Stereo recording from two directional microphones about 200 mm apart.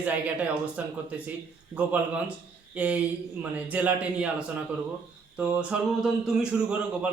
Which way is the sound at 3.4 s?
5° right (ahead or behind).